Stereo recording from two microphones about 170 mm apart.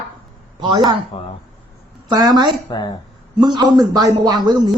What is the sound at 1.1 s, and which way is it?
Speech, 35° left (ahead or behind).